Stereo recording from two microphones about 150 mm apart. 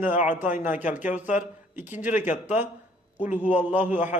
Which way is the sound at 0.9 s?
10° right (ahead or behind).